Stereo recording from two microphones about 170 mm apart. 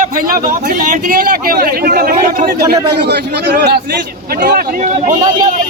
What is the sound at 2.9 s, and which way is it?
Speech, 80° right.